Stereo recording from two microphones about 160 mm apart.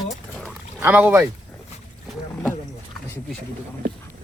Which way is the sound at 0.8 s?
10° right (ahead or behind).